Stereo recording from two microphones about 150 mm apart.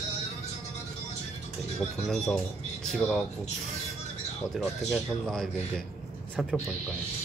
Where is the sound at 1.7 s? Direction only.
5° left (ahead or behind).